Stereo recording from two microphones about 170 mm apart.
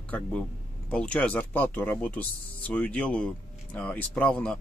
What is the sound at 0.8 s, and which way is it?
Speech, 5° left (ahead or behind).